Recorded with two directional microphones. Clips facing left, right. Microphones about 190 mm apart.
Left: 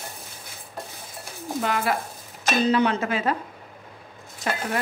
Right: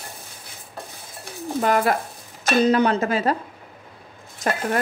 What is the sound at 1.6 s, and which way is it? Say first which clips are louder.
A woman's voice: right 5 dB; 45° right (ahead or behind).